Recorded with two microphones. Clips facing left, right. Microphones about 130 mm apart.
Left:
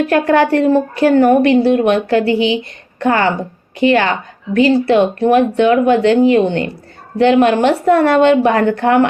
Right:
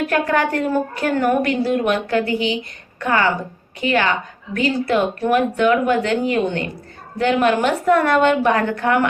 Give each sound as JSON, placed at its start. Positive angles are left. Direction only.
{"t": 0.1, "sound": "a woman's voice", "side_deg": 35}